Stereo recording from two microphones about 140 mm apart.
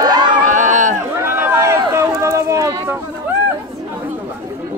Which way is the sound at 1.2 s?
15° right (ahead or behind).